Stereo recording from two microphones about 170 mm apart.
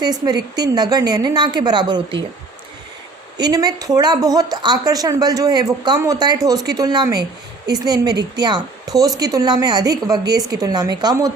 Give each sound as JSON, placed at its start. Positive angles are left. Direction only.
{"t": 0.0, "sound": "speech", "side_deg": -25}
{"t": 3.3, "sound": "speech", "side_deg": -25}